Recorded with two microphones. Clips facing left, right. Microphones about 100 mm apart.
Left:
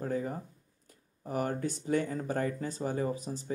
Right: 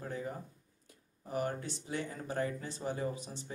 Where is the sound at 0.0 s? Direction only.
40° left (ahead or behind).